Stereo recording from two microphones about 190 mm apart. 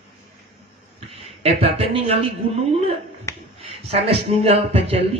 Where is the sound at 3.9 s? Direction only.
30° right (ahead or behind).